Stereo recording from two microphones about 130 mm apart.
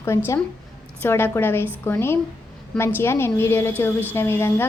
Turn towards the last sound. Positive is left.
turn(degrees=15)  # may be behind; listen again after turning